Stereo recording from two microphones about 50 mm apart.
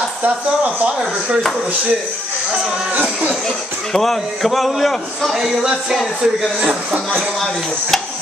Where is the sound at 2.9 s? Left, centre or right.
Right.